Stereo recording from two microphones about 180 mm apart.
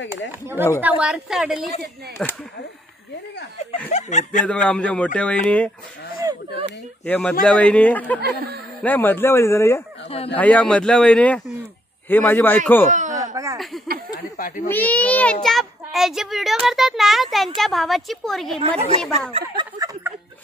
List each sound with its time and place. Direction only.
0.7 s speech: 5° right (ahead or behind)
3.9 s speech: 40° left (ahead or behind)
4.5 s speech: 5° left (ahead or behind)
7.1 s speech: 5° left (ahead or behind)
8.2 s speech: 60° right (ahead or behind)
8.8 s speech: 10° left (ahead or behind)
12.9 s a sound: 40° right (ahead or behind)
13.3 s a sound: 15° right (ahead or behind)
14.3 s speech: 50° left (ahead or behind)
14.7 s speech: 10° left (ahead or behind)
18.6 s a woman's voice: 35° right (ahead or behind)
19.3 s a sound: 25° right (ahead or behind)